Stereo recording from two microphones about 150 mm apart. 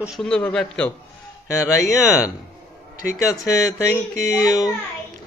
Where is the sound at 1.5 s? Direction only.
25° left (ahead or behind).